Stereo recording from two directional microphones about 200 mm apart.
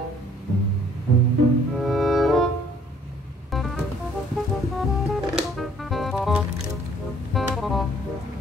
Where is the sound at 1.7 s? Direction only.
Centre (ahead or behind).